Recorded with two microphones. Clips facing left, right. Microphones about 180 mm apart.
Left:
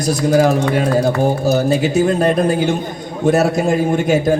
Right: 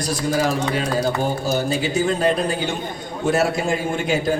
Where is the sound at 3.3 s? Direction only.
40° left (ahead or behind).